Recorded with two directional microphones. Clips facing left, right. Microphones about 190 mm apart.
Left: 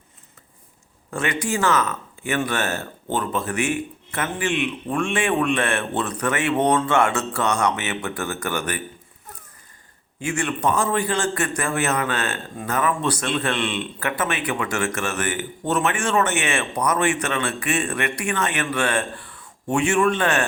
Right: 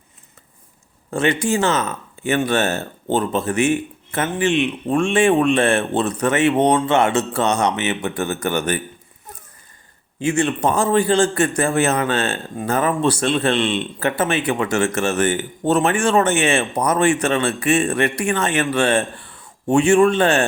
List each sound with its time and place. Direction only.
1.1 s a man's voice: 25° right (ahead or behind)
10.2 s a man's voice: 25° right (ahead or behind)